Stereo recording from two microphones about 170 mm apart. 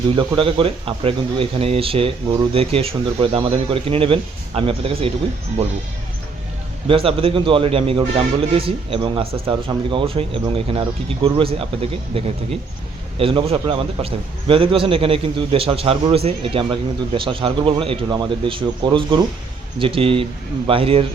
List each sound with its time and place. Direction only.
0.2 s speech: 30° right (ahead or behind)
6.8 s speech: 35° right (ahead or behind)